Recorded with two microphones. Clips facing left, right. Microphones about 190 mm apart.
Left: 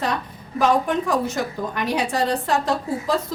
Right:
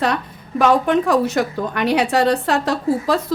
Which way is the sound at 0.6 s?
70° right (ahead or behind).